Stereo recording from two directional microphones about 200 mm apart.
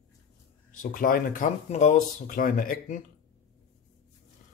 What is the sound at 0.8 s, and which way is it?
Speech, 45° left (ahead or behind).